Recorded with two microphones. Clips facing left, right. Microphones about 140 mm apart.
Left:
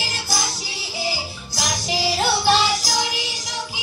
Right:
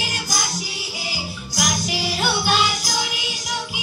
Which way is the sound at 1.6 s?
30° left (ahead or behind).